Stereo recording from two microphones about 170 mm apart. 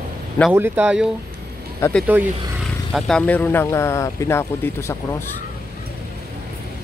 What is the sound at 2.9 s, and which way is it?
Speech, 5° left (ahead or behind).